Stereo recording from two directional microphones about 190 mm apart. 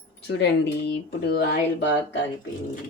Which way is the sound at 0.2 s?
65° left (ahead or behind).